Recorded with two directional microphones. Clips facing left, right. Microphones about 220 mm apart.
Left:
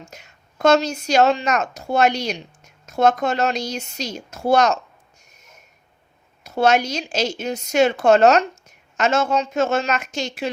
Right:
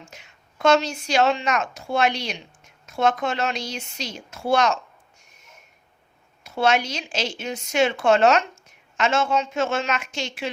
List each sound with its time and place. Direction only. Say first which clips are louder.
0.1 s a woman's voice: left 3 dB; 40° left (ahead or behind)
5.2 s a sound: left 2 dB; 40° left (ahead or behind)
6.4 s a woman's voice: left 4 dB; 40° left (ahead or behind)